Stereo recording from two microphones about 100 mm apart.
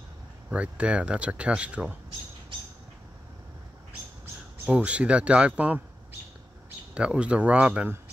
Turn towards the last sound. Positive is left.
turn(degrees=-10)  # may be behind; listen again after turning